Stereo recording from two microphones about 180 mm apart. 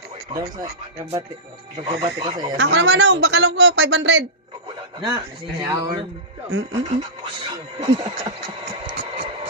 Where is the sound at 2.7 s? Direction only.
75° right (ahead or behind).